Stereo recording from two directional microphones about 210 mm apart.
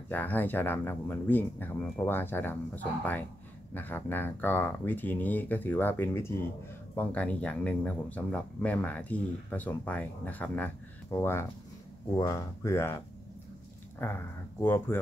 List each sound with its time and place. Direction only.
0.1 s speech: 10° left (ahead or behind)